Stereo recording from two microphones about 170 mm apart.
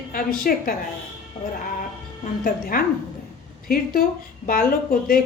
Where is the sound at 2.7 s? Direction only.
55° left (ahead or behind).